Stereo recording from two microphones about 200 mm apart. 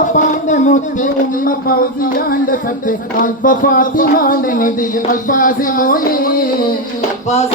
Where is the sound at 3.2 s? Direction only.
40° left (ahead or behind).